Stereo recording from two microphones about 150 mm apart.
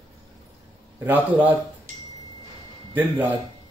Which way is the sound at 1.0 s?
10° right (ahead or behind).